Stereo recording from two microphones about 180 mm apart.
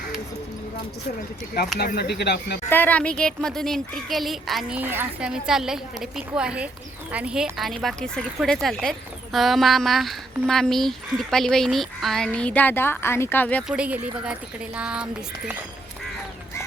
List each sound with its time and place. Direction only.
1.8 s speech: 60° left (ahead or behind)
2.6 s speech: 10° left (ahead or behind)
13.7 s a woman's voice: 5° right (ahead or behind)